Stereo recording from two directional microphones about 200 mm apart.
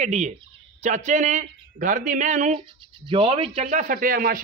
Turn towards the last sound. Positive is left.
turn(degrees=-45)  # may be behind; listen again after turning